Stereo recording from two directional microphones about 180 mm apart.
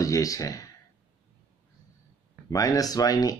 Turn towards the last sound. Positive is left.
turn(degrees=20)  # may be behind; listen again after turning